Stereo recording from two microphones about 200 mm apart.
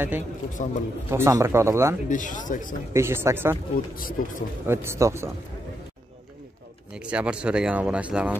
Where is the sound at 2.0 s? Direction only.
40° left (ahead or behind).